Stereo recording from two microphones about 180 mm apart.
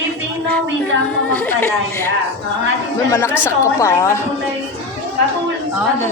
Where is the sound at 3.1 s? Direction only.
15° left (ahead or behind).